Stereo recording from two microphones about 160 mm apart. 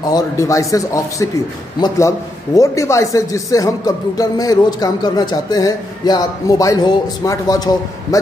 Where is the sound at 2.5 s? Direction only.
20° left (ahead or behind).